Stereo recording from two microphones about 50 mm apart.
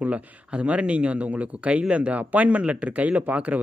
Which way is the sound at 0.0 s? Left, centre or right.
Right.